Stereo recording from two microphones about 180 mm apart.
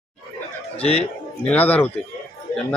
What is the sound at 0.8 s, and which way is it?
Speech, 35° left (ahead or behind).